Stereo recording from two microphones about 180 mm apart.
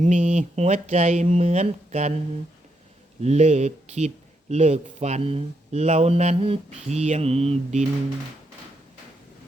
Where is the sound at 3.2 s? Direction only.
40° right (ahead or behind).